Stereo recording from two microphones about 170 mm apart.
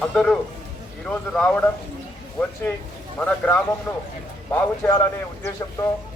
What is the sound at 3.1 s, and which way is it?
Speech, 10° left (ahead or behind).